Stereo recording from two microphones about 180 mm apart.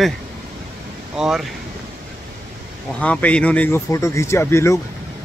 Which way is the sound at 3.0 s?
5° left (ahead or behind).